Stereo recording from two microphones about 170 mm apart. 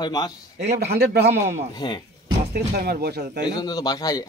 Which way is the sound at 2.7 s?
65° right (ahead or behind).